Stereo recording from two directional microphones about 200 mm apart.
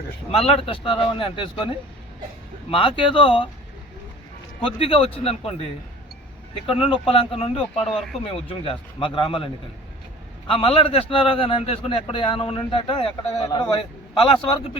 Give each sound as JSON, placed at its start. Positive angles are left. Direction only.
{"t": 0.3, "sound": "a man's voice", "side_deg": 30}
{"t": 4.6, "sound": "a man's voice", "side_deg": 30}